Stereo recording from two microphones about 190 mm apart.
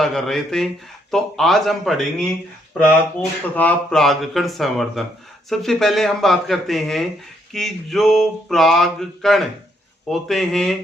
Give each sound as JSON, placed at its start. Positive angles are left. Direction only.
{"t": 0.0, "sound": "speech", "side_deg": 0}